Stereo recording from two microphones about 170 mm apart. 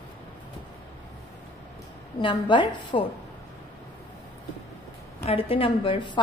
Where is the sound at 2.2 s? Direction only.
30° left (ahead or behind).